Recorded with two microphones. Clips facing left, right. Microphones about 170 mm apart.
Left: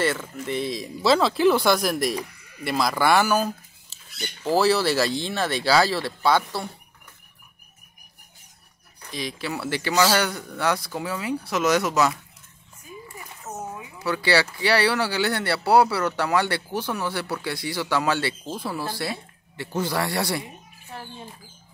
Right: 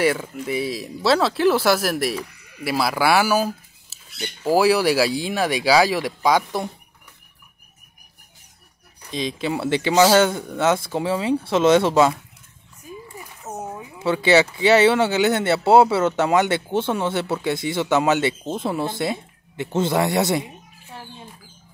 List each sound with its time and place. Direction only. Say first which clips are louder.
0.0 s speech: right 4 dB; 10° right (ahead or behind)
9.1 s speech: right 6 dB; 20° right (ahead or behind)
13.9 s speech: right 6 dB; 25° right (ahead or behind)